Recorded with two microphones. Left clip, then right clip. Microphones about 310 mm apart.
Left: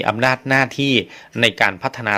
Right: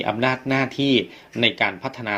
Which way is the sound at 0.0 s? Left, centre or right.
Left.